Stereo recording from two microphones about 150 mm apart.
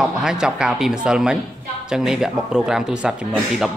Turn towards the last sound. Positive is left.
turn(degrees=-5)  # may be behind; listen again after turning